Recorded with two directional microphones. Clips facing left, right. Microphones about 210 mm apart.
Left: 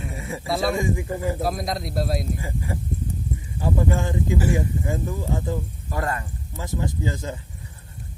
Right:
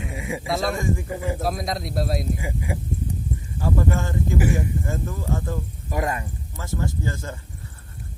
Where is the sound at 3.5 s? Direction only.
15° left (ahead or behind).